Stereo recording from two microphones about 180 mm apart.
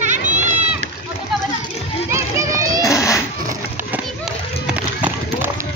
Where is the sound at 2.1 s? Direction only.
15° right (ahead or behind).